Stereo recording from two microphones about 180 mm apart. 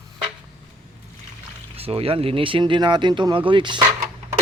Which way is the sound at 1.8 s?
35° right (ahead or behind).